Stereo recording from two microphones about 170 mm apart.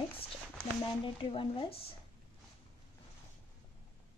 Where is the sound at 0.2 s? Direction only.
30° left (ahead or behind).